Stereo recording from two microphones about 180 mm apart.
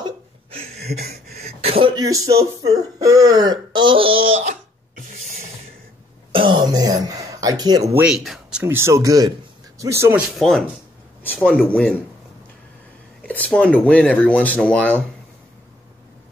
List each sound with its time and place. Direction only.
0.0 s hiccup: 30° right (ahead or behind)
0.7 s a sound: 60° right (ahead or behind)
1.4 s a sound: 35° right (ahead or behind)
2.3 s throat clearing: 20° right (ahead or behind); by 5.4 s 45° right (ahead or behind)
6.3 s throat clearing: 25° right (ahead or behind); by 8.6 s centre (ahead or behind)
8.6 s speech: 15° right (ahead or behind)
10.2 s speech: centre (ahead or behind)
13.2 s speech: 5° left (ahead or behind)